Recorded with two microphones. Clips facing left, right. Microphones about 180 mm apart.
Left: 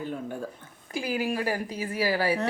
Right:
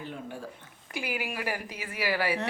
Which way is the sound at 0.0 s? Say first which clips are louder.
Left 5 dB; 45° left (ahead or behind).